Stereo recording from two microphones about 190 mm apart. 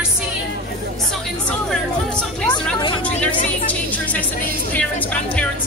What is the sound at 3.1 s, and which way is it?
Speech, 35° left (ahead or behind).